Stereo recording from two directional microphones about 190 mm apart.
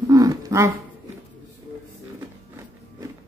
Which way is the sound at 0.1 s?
20° right (ahead or behind).